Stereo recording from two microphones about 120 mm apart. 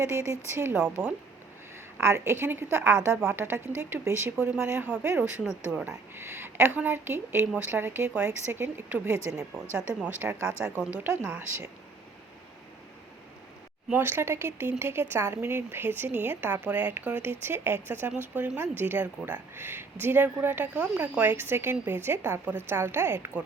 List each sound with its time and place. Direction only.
0.0 s speech: 25° right (ahead or behind)
5.4 s speech: 5° right (ahead or behind)
6.1 s a woman's voice: 20° right (ahead or behind)
13.9 s speech: 20° right (ahead or behind)